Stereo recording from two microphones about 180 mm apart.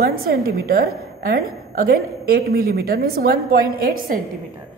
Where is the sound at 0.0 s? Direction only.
55° right (ahead or behind).